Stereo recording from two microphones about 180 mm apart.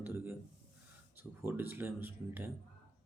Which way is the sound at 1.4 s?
10° right (ahead or behind).